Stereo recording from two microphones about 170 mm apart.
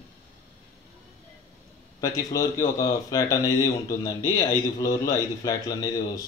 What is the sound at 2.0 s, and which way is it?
Speech, 20° left (ahead or behind).